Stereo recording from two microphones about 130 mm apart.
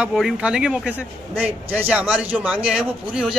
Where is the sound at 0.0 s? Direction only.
Centre (ahead or behind).